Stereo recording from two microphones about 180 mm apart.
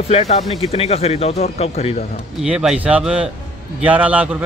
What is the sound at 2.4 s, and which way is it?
Speech, 5° right (ahead or behind).